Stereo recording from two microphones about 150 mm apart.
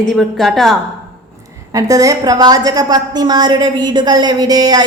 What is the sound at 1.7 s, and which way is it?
A woman's voice, 25° right (ahead or behind).